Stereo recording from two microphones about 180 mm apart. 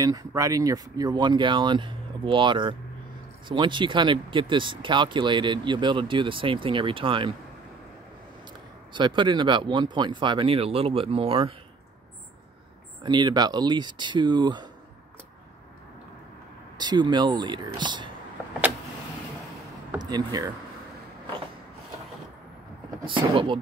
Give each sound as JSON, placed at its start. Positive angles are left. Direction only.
{"t": 0.0, "sound": "speech", "side_deg": -20}
{"t": 8.9, "sound": "speech", "side_deg": -25}
{"t": 13.0, "sound": "speech", "side_deg": -25}
{"t": 16.7, "sound": "speech", "side_deg": -25}
{"t": 20.0, "sound": "speech", "side_deg": -25}
{"t": 23.0, "sound": "speech", "side_deg": -30}